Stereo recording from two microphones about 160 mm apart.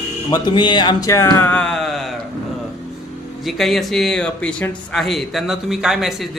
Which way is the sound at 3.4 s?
Centre (ahead or behind).